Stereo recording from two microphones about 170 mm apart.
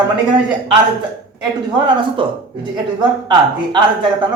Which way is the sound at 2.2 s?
30° right (ahead or behind).